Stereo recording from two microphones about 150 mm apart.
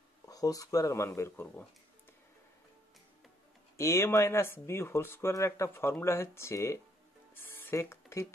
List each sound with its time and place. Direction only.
0.3 s speech: 25° left (ahead or behind)
3.7 s speech: 20° left (ahead or behind)
7.3 s a sound: 15° left (ahead or behind)